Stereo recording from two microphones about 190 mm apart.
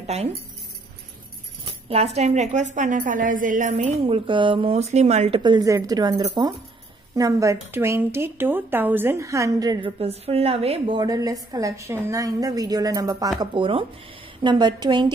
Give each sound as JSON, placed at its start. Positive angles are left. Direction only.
{"t": 0.0, "sound": "speech", "side_deg": -35}
{"t": 1.9, "sound": "a woman's voice", "side_deg": -30}
{"t": 4.1, "sound": "a woman's voice", "side_deg": -25}
{"t": 5.4, "sound": "a woman's voice", "side_deg": -20}